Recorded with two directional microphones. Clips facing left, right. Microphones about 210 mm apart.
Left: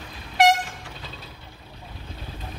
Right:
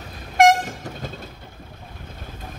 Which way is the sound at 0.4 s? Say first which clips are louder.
Right 4 dB; 45° right (ahead or behind).